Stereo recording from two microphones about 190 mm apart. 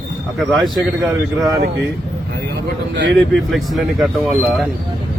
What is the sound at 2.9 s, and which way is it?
Speech, 65° right (ahead or behind).